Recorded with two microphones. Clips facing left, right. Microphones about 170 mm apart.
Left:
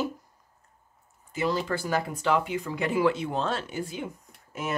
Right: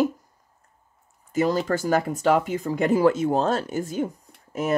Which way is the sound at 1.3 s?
45° right (ahead or behind).